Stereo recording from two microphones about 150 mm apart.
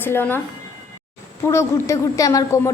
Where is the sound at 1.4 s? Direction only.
20° left (ahead or behind).